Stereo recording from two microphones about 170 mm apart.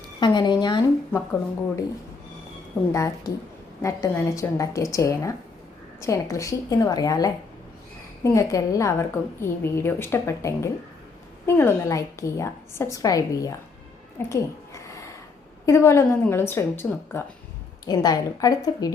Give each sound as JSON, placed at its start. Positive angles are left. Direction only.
{"t": 0.2, "sound": "a woman's voice", "side_deg": 25}
{"t": 2.9, "sound": "a woman's voice", "side_deg": 20}
{"t": 14.2, "sound": "a sound", "side_deg": 15}
{"t": 15.6, "sound": "a woman's voice", "side_deg": 15}